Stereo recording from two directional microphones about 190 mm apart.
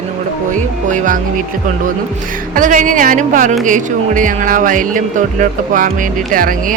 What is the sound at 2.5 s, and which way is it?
Speech, 45° right (ahead or behind).